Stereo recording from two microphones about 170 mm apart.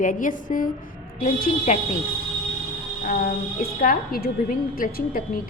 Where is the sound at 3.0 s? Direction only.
55° left (ahead or behind).